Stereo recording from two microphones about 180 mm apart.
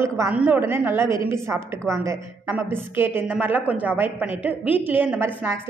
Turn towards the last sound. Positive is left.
turn(degrees=-10)  # may be behind; listen again after turning